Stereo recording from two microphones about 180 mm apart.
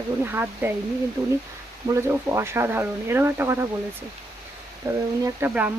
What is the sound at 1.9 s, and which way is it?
Speech, 15° right (ahead or behind).